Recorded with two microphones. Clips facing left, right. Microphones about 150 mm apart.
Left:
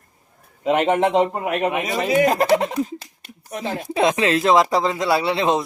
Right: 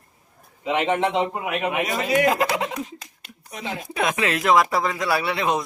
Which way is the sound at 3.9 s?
25° left (ahead or behind).